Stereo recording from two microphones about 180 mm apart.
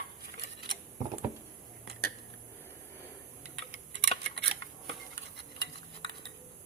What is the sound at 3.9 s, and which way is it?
Tick, 70° right (ahead or behind).